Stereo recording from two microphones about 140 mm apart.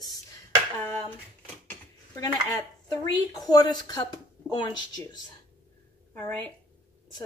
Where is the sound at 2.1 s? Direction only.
25° left (ahead or behind).